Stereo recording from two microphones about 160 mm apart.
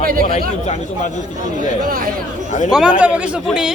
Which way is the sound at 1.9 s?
65° right (ahead or behind).